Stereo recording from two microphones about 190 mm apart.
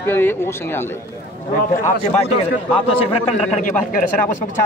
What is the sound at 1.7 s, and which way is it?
Speech, 40° left (ahead or behind).